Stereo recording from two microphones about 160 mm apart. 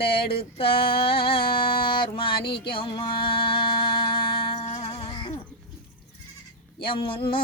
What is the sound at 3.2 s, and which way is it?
Music, 30° left (ahead or behind).